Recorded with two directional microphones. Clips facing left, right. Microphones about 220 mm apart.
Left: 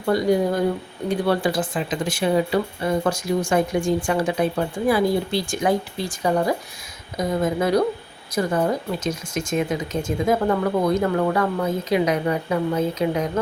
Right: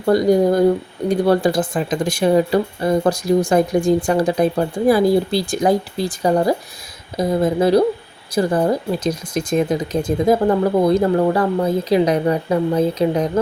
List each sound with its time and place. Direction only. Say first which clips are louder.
0.0 s speech: right 5 dB; 40° right (ahead or behind)